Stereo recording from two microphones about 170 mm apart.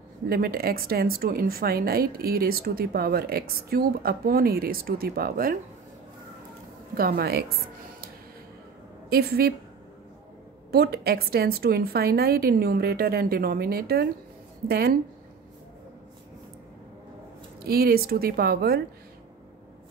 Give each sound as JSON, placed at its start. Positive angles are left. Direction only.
{"t": 0.3, "sound": "a woman's voice", "side_deg": -60}
{"t": 7.0, "sound": "a woman's voice", "side_deg": -60}
{"t": 9.1, "sound": "a woman's voice", "side_deg": -65}
{"t": 10.7, "sound": "a woman's voice", "side_deg": -65}
{"t": 17.6, "sound": "a woman's voice", "side_deg": -65}